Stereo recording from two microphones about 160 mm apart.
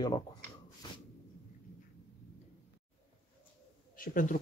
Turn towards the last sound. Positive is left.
turn(degrees=60)  # may be behind; listen again after turning